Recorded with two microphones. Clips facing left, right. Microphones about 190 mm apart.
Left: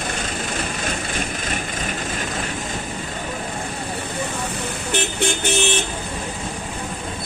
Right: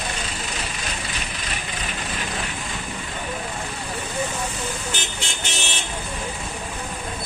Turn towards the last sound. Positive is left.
turn(degrees=55)  # may be behind; listen again after turning